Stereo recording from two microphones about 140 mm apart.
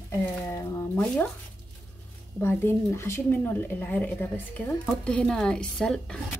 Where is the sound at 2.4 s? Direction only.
15° left (ahead or behind).